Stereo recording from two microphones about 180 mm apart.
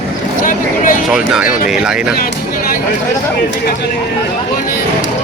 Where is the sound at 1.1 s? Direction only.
5° right (ahead or behind).